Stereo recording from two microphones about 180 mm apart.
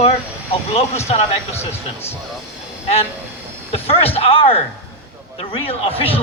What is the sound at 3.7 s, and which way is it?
A man's voice, 35° left (ahead or behind).